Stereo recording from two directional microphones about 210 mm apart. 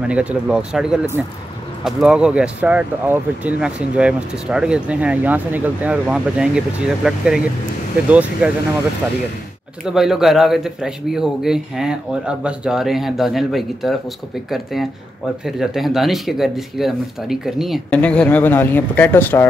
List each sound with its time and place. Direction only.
0.1 s speech: 5° right (ahead or behind)
9.8 s speech: centre (ahead or behind)